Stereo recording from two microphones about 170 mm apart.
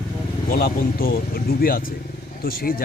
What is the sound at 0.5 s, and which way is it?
Speech, 60° left (ahead or behind).